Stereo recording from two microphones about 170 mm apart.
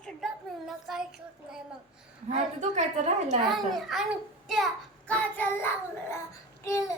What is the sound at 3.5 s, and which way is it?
Speech, centre (ahead or behind).